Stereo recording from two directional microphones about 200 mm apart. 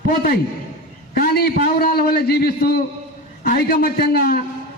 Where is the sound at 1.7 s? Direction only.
50° left (ahead or behind).